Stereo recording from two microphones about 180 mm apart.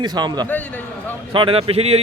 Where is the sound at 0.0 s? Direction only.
25° right (ahead or behind).